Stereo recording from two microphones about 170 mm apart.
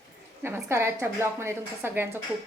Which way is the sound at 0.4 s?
15° right (ahead or behind).